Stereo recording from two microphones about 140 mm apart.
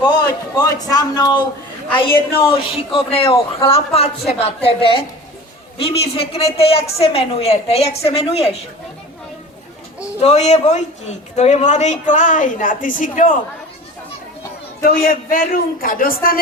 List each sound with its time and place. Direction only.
0.0 s a man's voice: 25° left (ahead or behind)
1.9 s a woman's voice: 35° left (ahead or behind)
10.2 s a woman's voice: 50° left (ahead or behind); by 13.3 s 70° left (ahead or behind)
14.8 s a man's voice: 85° left